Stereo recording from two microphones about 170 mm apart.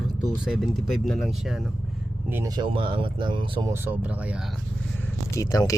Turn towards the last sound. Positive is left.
turn(degrees=20)  # may be behind; listen again after turning